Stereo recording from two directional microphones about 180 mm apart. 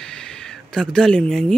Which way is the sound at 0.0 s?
5° left (ahead or behind).